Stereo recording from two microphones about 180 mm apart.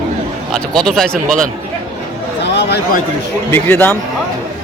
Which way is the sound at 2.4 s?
70° left (ahead or behind).